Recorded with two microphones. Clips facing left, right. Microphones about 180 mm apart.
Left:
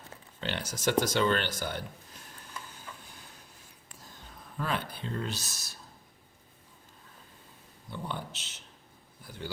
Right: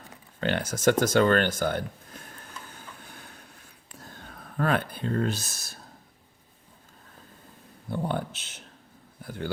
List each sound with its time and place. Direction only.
0.3 s speech: 50° right (ahead or behind)
2.7 s a sound: 60° right (ahead or behind)
3.9 s speech: 60° right (ahead or behind)
7.9 s speech: 50° right (ahead or behind)